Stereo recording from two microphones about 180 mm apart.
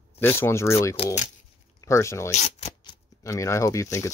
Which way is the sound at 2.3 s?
40° left (ahead or behind).